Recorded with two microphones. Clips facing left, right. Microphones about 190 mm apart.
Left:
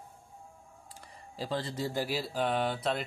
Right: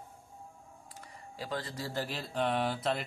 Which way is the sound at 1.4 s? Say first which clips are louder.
Left 4 dB; 30° left (ahead or behind).